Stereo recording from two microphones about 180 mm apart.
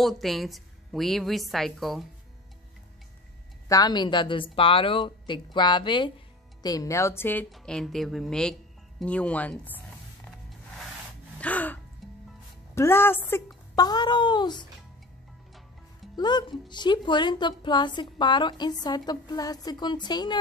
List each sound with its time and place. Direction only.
0.0 s a woman's voice: centre (ahead or behind)
3.6 s a woman's voice: 20° left (ahead or behind)
11.3 s gasp: 10° left (ahead or behind)
12.7 s speech: 15° left (ahead or behind)
13.7 s a woman's voice: 25° left (ahead or behind)
16.2 s a woman's voice: 25° left (ahead or behind)